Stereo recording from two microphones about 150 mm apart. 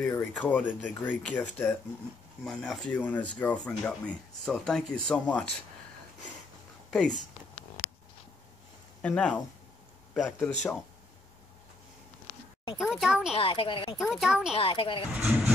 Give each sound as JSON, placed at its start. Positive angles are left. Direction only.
{"t": 0.1, "sound": "speech", "side_deg": 10}
{"t": 2.4, "sound": "speech", "side_deg": 5}
{"t": 6.9, "sound": "speech", "side_deg": 5}
{"t": 9.0, "sound": "speech", "side_deg": 5}
{"t": 12.7, "sound": "speech", "side_deg": -5}
{"t": 13.3, "sound": "a woman's voice", "side_deg": 35}
{"t": 13.9, "sound": "speech", "side_deg": 0}
{"t": 14.5, "sound": "a woman's voice", "side_deg": 35}
{"t": 15.1, "sound": "speech", "side_deg": -5}